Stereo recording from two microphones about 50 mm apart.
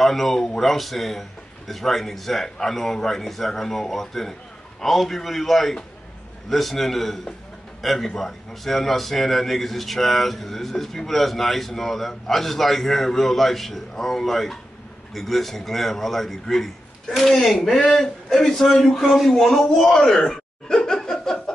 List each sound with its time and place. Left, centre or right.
0.0 s a man's voice: centre